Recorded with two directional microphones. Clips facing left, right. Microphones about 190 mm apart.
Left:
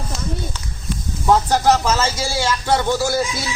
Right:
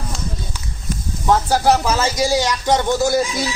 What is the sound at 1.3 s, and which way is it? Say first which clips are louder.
Speech: even; 10° right (ahead or behind).